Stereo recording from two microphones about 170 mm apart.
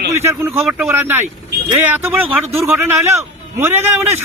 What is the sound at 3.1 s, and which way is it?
Speech, 15° right (ahead or behind).